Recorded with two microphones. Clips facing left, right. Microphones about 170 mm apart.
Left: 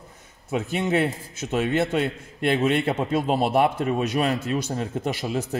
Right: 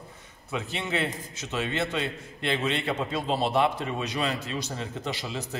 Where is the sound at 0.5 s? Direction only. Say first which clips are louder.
Left 7 dB; 50° left (ahead or behind).